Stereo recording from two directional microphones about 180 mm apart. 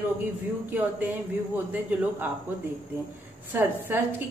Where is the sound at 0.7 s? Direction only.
10° right (ahead or behind).